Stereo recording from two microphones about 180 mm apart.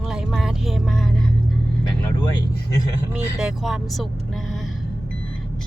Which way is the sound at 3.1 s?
5° right (ahead or behind).